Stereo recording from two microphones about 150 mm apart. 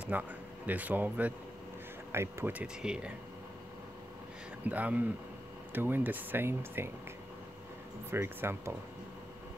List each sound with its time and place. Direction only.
0.0 s speech: 10° right (ahead or behind)
4.6 s speech: 10° right (ahead or behind)
8.1 s speech: 15° right (ahead or behind)